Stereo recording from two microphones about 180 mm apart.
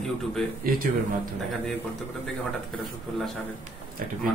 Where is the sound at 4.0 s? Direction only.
55° right (ahead or behind).